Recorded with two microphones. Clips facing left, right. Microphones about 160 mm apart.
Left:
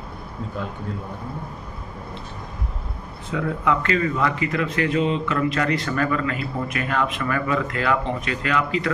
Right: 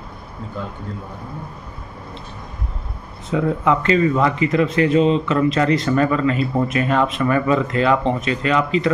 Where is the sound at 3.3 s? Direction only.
25° right (ahead or behind).